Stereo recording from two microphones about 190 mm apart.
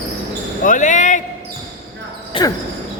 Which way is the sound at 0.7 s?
40° left (ahead or behind).